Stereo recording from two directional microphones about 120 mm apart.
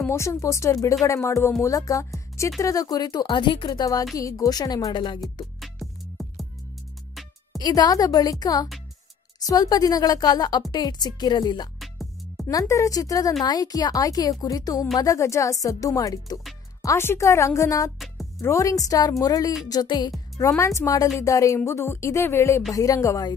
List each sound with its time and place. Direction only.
0.0 s speech: 20° left (ahead or behind); by 5.2 s 40° left (ahead or behind)
5.2 s music: centre (ahead or behind)
7.5 s speech: 35° left (ahead or behind)
11.8 s music: centre (ahead or behind)
12.4 s speech: 30° left (ahead or behind)
17.9 s speech: centre (ahead or behind)
18.4 s speech: 25° left (ahead or behind)